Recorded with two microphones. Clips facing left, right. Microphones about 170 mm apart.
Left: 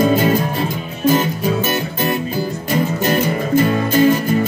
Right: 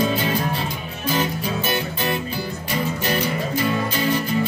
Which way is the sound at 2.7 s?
50° left (ahead or behind).